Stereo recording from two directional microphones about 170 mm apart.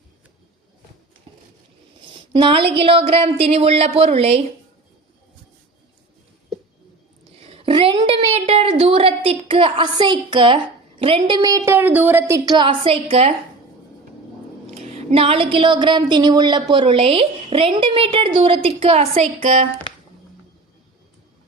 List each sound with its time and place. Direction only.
2.1 s a sound: 30° right (ahead or behind)
2.7 s a woman's voice: 35° right (ahead or behind)
7.3 s a sound: 35° right (ahead or behind)
11.0 s a woman's voice: 30° right (ahead or behind); by 12.4 s 15° right (ahead or behind)
12.5 s a woman's voice: 30° right (ahead or behind)
14.8 s a woman's voice: 35° right (ahead or behind)